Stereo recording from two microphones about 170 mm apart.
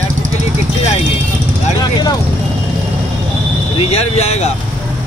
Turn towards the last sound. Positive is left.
turn(degrees=40)  # may be behind; listen again after turning